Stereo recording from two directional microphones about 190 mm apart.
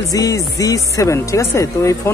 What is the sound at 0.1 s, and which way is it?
Speech, 20° left (ahead or behind).